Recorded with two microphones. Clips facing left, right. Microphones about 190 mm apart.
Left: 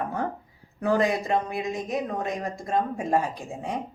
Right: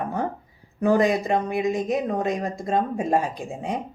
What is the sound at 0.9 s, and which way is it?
Speech, 20° right (ahead or behind).